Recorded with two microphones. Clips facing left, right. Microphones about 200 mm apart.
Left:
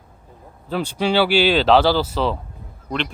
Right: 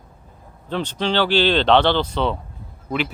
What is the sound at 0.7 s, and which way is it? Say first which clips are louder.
Speech: left 2 dB; 10° left (ahead or behind).